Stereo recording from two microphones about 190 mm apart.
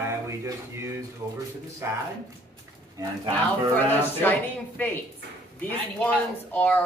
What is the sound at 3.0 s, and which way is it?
Speech, 15° right (ahead or behind).